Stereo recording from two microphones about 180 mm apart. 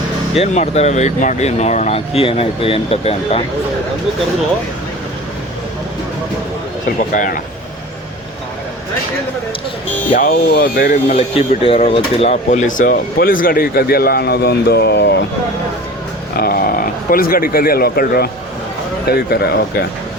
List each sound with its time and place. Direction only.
0.3 s speech: 40° left (ahead or behind)
7.1 s speech: 45° left (ahead or behind)
10.2 s speech: 55° left (ahead or behind)
11.1 s speech: 30° left (ahead or behind); by 15.1 s 70° left (ahead or behind)
16.4 s speech: 55° left (ahead or behind)